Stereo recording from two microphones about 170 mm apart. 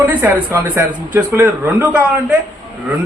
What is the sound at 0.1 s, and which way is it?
Speech, 15° right (ahead or behind).